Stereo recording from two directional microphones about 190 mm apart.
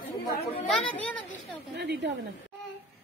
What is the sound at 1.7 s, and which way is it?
Speech, 65° right (ahead or behind).